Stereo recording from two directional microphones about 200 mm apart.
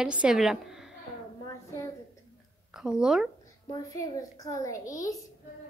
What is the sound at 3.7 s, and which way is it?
A child's voice, 15° left (ahead or behind).